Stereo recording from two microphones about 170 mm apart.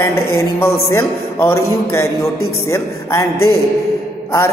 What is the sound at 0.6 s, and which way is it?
A man's voice, 15° left (ahead or behind).